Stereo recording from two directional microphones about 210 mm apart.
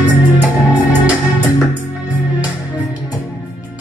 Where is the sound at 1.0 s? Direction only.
5° right (ahead or behind).